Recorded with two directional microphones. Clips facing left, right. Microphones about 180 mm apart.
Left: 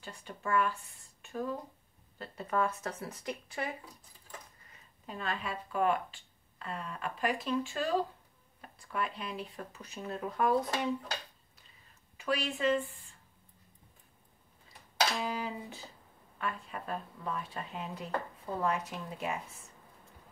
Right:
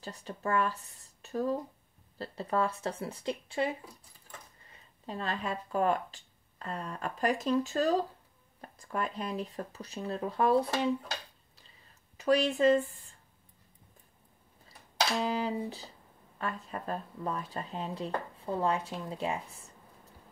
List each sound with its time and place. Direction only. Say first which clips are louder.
0.0 s speech: right 4 dB; 40° right (ahead or behind)
12.2 s speech: right 7 dB; 40° right (ahead or behind)
15.2 s speech: right 5 dB; 35° right (ahead or behind)